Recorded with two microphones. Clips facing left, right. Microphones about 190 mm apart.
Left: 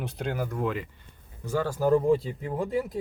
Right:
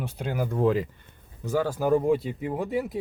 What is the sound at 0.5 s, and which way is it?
Speech, 35° right (ahead or behind).